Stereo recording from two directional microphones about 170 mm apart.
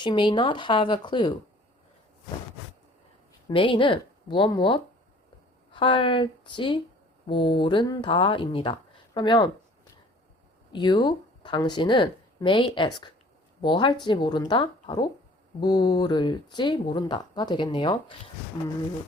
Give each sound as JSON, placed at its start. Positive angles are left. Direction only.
{"t": 0.0, "sound": "speech", "side_deg": 25}
{"t": 3.5, "sound": "speech", "side_deg": 30}
{"t": 10.7, "sound": "speech", "side_deg": 25}